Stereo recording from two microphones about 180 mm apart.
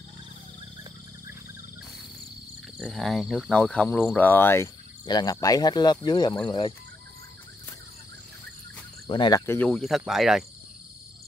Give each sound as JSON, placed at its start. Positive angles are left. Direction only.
{"t": 2.8, "sound": "speech", "side_deg": 0}
{"t": 9.0, "sound": "speech", "side_deg": 25}
{"t": 9.5, "sound": "speech", "side_deg": 5}